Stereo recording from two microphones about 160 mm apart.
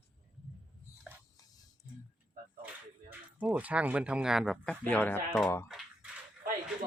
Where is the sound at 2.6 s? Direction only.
10° right (ahead or behind).